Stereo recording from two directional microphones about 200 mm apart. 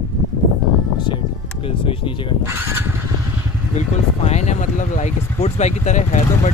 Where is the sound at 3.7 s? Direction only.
35° left (ahead or behind).